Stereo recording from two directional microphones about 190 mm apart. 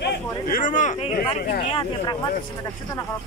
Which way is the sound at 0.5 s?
40° left (ahead or behind).